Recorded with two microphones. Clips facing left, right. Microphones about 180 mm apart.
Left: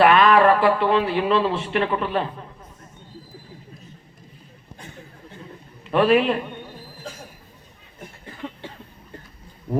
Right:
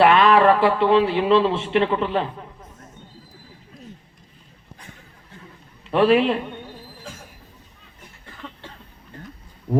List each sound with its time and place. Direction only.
0.0 s speech: 25° right (ahead or behind)
5.9 s a man's voice: 25° right (ahead or behind)
8.4 s a sound: 15° left (ahead or behind)